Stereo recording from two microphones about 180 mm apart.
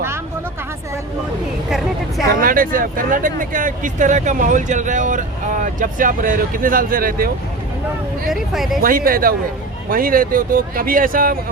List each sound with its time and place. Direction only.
2.4 s speech: 50° right (ahead or behind)
8.3 s speech: centre (ahead or behind)
8.8 s speech: 50° right (ahead or behind)